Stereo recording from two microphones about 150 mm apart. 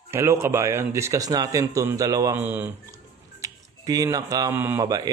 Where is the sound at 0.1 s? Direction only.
20° right (ahead or behind).